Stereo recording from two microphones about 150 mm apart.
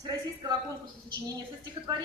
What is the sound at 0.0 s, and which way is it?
Speech, 25° right (ahead or behind).